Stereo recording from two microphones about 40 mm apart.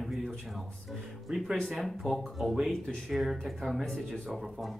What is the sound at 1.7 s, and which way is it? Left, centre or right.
Speech, centre.